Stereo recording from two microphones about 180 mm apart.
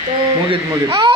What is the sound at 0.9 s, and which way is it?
Speech, 25° right (ahead or behind).